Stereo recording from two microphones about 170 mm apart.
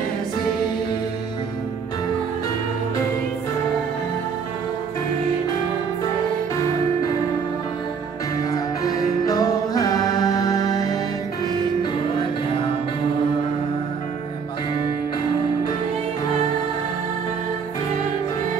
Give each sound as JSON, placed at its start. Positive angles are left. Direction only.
{"t": 8.4, "sound": "music", "side_deg": 20}